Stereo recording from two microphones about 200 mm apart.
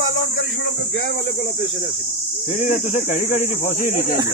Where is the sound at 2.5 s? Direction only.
40° left (ahead or behind).